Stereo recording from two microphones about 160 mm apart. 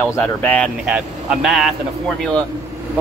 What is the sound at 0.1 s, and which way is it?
Speech, 10° left (ahead or behind).